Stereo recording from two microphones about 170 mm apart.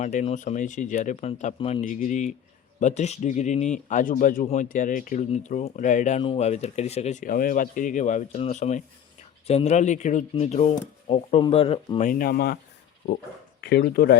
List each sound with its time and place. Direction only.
0.0 s speech: 45° left (ahead or behind)
1.9 s speech: 50° left (ahead or behind); by 11.9 s 30° left (ahead or behind)
11.9 s speech: 55° left (ahead or behind)
13.6 s speech: 70° left (ahead or behind)